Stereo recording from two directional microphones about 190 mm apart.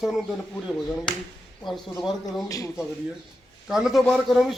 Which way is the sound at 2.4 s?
20° left (ahead or behind).